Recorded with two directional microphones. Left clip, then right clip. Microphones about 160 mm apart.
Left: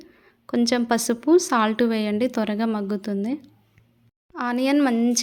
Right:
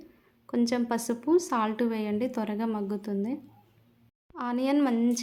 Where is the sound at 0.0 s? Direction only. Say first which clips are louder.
Left 6 dB; 25° left (ahead or behind).